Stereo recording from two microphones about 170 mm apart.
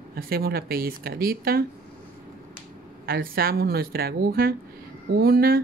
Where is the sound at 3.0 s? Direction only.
60° right (ahead or behind).